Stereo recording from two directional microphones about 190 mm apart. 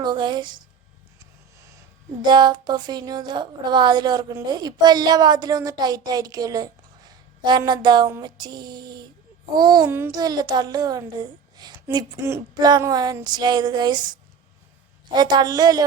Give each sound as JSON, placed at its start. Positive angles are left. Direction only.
{"t": 0.0, "sound": "a woman's voice", "side_deg": -25}
{"t": 2.2, "sound": "a woman's voice", "side_deg": -25}